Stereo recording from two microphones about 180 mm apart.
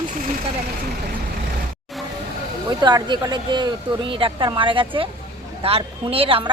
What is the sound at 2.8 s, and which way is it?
A woman's voice, 25° right (ahead or behind).